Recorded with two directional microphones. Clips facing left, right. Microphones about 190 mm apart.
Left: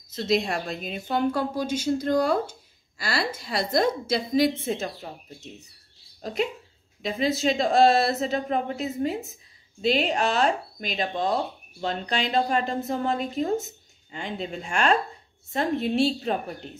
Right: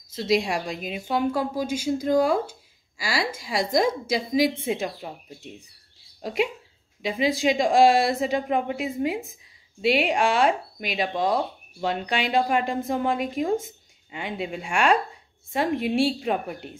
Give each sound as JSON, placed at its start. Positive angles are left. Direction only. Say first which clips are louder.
{"t": 0.1, "sound": "speech", "louder": "right 1 dB", "side_deg": -10}
{"t": 7.0, "sound": "speech", "louder": "right 1 dB", "side_deg": -10}